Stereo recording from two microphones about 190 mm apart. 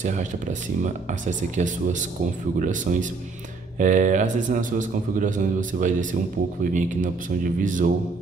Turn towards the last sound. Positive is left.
turn(degrees=-45)  # may be behind; listen again after turning